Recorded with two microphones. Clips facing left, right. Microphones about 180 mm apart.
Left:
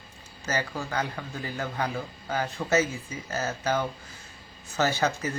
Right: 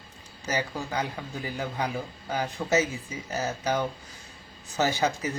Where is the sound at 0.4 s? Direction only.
15° right (ahead or behind).